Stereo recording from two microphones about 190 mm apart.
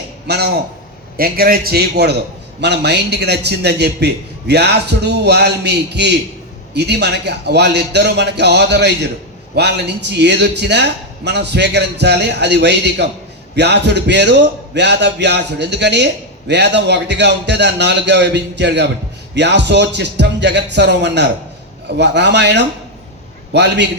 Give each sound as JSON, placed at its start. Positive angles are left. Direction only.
{"t": 0.3, "sound": "a man's voice", "side_deg": -55}